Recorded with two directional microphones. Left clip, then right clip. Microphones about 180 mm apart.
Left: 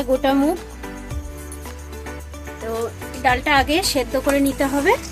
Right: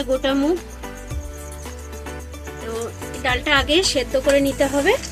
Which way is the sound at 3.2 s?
55° left (ahead or behind).